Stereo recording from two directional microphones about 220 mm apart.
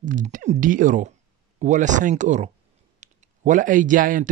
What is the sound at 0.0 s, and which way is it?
Speech, 35° right (ahead or behind).